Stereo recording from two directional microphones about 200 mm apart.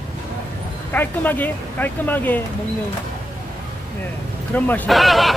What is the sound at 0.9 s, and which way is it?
Speech, 10° left (ahead or behind).